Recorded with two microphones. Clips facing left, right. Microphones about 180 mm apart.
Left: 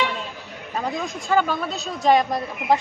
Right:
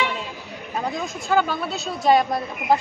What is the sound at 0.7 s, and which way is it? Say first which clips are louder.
Speech: even; 5° right (ahead or behind).